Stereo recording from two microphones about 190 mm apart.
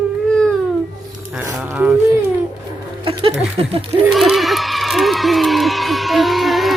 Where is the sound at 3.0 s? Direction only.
30° right (ahead or behind).